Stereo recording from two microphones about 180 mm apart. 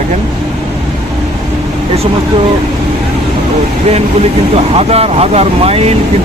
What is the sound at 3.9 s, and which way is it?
Speech, 35° right (ahead or behind).